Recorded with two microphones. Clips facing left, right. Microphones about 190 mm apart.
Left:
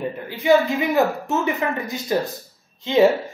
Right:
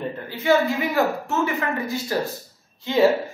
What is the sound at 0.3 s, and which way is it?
A woman's voice, 15° left (ahead or behind).